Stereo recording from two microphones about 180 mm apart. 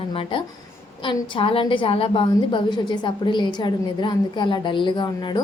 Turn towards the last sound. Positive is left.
turn(degrees=25)  # may be behind; listen again after turning